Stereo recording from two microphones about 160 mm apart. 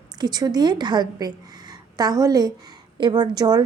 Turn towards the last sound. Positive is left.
turn(degrees=-25)  # may be behind; listen again after turning